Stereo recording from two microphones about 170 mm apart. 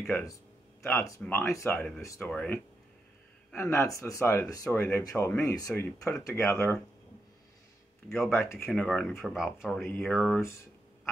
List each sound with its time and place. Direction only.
0.0 s speech: 10° left (ahead or behind)
1.7 s speech: 5° left (ahead or behind)
2.0 s speech: 15° left (ahead or behind)
8.3 s speech: 15° left (ahead or behind)